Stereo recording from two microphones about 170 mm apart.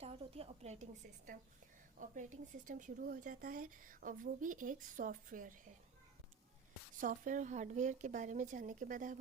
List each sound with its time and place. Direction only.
0.0 s a woman's voice: 35° right (ahead or behind)
2.0 s speech: 50° right (ahead or behind)
7.0 s speech: 50° right (ahead or behind)